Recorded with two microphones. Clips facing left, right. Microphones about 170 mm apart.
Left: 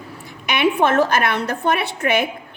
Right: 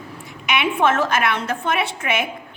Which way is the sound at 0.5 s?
35° left (ahead or behind).